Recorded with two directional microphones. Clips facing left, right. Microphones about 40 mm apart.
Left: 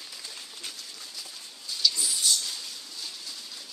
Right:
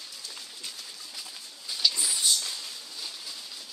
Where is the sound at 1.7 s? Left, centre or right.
Centre.